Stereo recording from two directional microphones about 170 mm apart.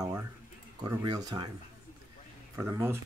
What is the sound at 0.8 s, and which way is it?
Speech, 25° right (ahead or behind).